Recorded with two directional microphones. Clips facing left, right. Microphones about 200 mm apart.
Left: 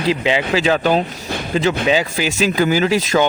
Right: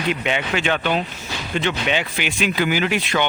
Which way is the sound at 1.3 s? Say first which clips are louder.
Left 8 dB; 55° left (ahead or behind).